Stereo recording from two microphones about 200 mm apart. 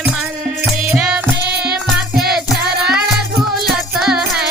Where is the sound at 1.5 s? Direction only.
55° right (ahead or behind).